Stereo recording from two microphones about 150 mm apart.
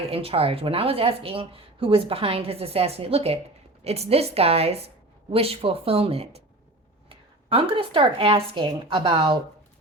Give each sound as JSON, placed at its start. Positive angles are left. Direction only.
{"t": 0.1, "sound": "a woman's voice", "side_deg": -40}